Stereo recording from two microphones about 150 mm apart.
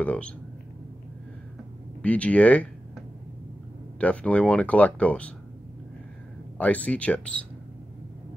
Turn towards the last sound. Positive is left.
turn(degrees=10)  # may be behind; listen again after turning